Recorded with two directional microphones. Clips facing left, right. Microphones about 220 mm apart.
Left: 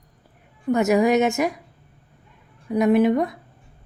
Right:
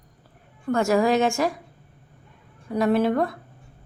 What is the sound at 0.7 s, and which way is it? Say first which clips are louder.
Speech: left 2 dB; 20° left (ahead or behind).